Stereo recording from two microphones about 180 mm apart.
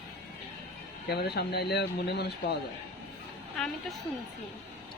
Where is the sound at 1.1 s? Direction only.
65° left (ahead or behind).